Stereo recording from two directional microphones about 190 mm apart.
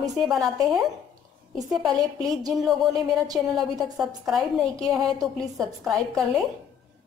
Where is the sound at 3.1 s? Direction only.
20° right (ahead or behind).